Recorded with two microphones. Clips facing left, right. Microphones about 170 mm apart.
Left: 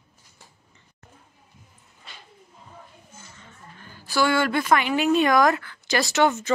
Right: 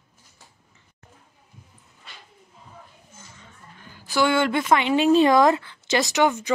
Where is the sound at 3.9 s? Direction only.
15° right (ahead or behind).